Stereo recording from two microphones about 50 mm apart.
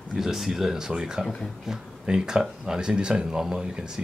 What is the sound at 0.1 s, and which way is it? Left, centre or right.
Speech, centre.